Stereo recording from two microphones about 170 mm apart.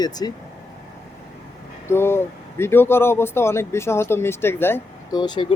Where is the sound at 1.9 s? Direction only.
15° left (ahead or behind).